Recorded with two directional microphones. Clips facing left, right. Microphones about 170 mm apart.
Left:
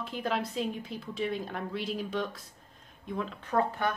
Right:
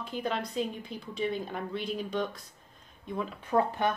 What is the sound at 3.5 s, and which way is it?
Speech, 20° right (ahead or behind).